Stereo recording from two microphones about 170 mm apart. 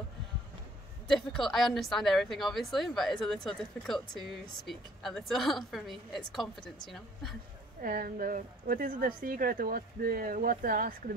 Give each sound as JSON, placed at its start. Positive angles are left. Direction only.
{"t": 1.0, "sound": "speech", "side_deg": 0}
{"t": 7.8, "sound": "a woman's voice", "side_deg": -55}